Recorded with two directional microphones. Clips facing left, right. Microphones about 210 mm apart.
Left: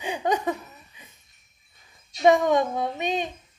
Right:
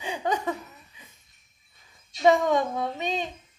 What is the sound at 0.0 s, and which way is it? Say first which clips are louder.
Laughter: left 3 dB; 15° left (ahead or behind).